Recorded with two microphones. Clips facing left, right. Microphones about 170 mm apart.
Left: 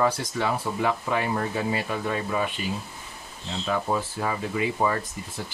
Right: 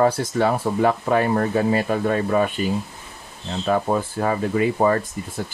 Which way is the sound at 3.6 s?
50° right (ahead or behind).